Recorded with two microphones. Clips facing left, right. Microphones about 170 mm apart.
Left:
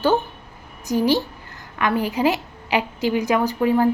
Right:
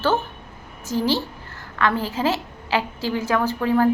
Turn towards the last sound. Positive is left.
turn(degrees=15)  # may be behind; listen again after turning